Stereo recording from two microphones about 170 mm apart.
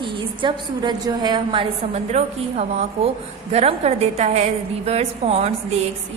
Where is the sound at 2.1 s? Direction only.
40° right (ahead or behind).